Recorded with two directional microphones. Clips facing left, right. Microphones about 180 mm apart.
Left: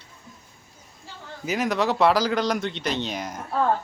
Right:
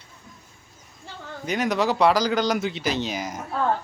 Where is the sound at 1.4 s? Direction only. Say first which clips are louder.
Right 1 dB; centre (ahead or behind).